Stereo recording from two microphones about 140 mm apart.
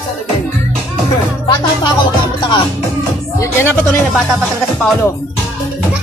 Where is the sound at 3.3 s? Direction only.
15° left (ahead or behind).